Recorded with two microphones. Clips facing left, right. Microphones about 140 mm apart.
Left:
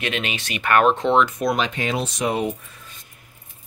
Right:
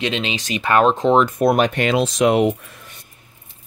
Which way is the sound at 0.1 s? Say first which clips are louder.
Right 4 dB; 25° right (ahead or behind).